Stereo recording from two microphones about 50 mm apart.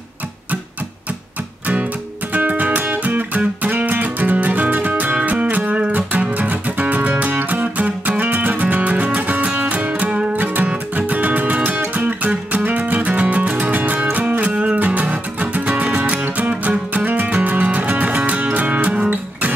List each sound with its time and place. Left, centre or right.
2.3 s music: right